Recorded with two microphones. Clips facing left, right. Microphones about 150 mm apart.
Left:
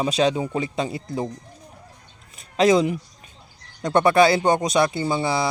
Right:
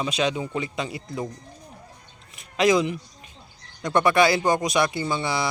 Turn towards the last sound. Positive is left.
turn(degrees=30)  # may be behind; listen again after turning